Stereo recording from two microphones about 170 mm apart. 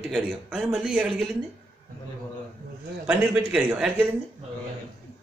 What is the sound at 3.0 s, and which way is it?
A man's voice, 10° right (ahead or behind).